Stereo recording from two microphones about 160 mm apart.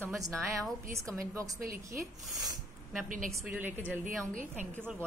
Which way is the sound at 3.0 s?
55° right (ahead or behind).